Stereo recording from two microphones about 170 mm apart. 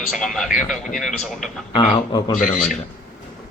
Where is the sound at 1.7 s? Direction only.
25° left (ahead or behind).